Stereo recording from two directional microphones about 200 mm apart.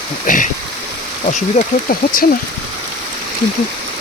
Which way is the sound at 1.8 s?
45° left (ahead or behind).